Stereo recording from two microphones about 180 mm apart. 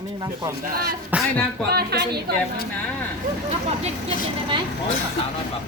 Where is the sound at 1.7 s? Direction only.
60° right (ahead or behind).